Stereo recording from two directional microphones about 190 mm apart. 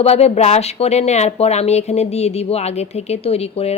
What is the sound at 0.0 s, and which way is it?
A woman's voice, 35° left (ahead or behind).